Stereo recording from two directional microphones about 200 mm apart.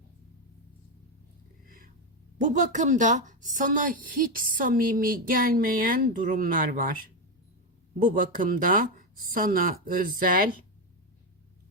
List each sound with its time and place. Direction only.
1.6 s a sound: 45° right (ahead or behind)
2.4 s a woman's voice: 40° right (ahead or behind)
8.0 s a woman's voice: 45° right (ahead or behind)